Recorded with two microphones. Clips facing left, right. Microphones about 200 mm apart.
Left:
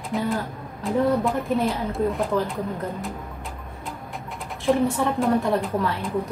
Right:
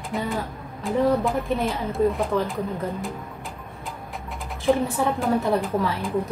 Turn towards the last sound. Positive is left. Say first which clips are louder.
# right 1 dB
turn(degrees=0)  # may be behind; listen again after turning